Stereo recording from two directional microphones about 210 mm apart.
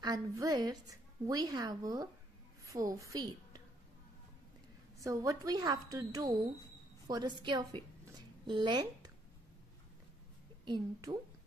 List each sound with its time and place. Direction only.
0.0 s a woman's voice: 15° right (ahead or behind)
5.0 s a woman's voice: 15° right (ahead or behind)
10.6 s a woman's voice: 20° right (ahead or behind)